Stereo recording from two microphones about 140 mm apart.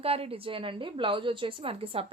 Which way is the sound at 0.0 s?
45° right (ahead or behind).